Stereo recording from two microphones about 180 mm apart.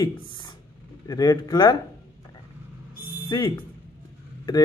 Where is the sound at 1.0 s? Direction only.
20° left (ahead or behind).